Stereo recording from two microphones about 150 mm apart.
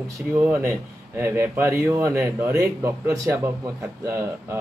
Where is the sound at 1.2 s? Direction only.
15° right (ahead or behind).